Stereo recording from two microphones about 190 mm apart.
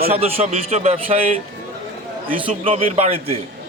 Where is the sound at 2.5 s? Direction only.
30° right (ahead or behind).